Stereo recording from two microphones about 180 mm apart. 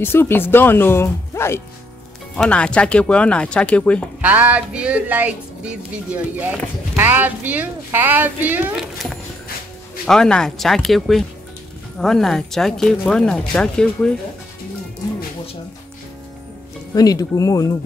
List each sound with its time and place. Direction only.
0.0 s speech: 10° left (ahead or behind)
4.2 s speech: 10° right (ahead or behind)
10.0 s speech: 5° left (ahead or behind)
16.9 s speech: 20° left (ahead or behind)